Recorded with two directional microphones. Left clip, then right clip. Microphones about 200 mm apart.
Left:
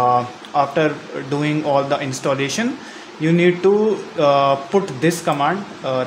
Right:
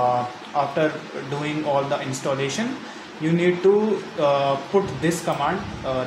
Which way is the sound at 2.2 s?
60° left (ahead or behind).